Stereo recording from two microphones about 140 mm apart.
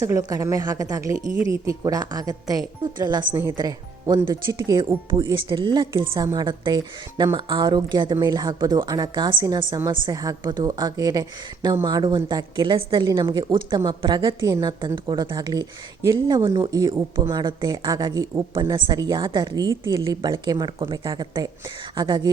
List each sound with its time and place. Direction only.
0.0 s speech: 25° right (ahead or behind)